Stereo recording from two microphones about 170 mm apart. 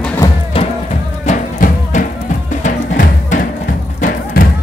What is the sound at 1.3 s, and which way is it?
Music, 45° left (ahead or behind).